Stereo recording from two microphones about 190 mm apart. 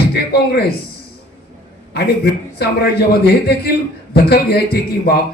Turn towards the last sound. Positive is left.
turn(degrees=55)  # may be behind; listen again after turning